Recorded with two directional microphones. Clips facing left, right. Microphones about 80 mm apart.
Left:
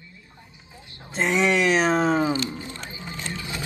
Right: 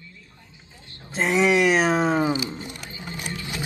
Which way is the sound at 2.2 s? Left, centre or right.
Centre.